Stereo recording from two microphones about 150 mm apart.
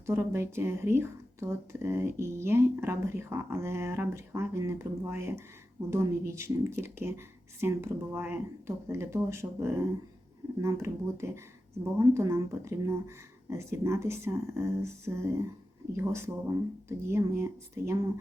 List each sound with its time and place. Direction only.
0.0 s speech: 15° right (ahead or behind)